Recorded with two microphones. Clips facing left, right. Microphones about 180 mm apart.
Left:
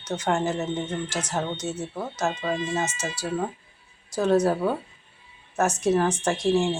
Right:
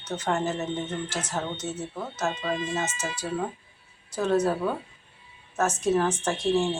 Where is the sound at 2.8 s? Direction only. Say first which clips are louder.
Left 2 dB; 85° left.